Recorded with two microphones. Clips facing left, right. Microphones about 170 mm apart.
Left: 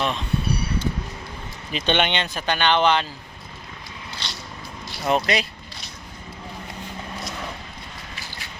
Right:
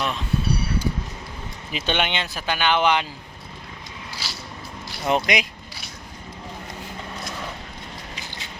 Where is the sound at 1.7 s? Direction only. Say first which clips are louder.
Left 3 dB; 5° right (ahead or behind).